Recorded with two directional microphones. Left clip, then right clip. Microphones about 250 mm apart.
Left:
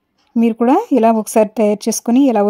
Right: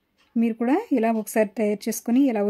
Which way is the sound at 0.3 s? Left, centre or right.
Left.